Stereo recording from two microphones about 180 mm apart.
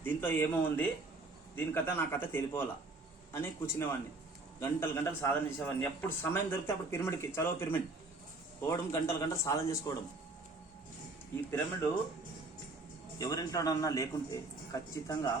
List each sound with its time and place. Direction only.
0.0 s a man's voice: 10° left (ahead or behind)
13.1 s a man's voice: 20° left (ahead or behind)